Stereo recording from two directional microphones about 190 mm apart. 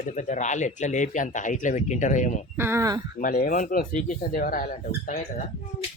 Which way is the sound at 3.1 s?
45° left (ahead or behind).